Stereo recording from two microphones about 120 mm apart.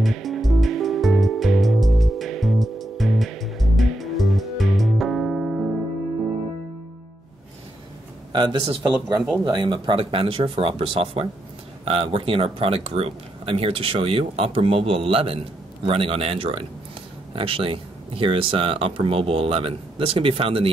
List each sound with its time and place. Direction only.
0.0 s music: centre (ahead or behind)
8.3 s speech: 45° right (ahead or behind)
8.9 s speech: 5° right (ahead or behind)
9.4 s speech: 40° right (ahead or behind)